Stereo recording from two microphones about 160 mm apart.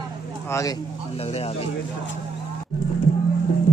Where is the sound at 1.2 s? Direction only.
40° left (ahead or behind).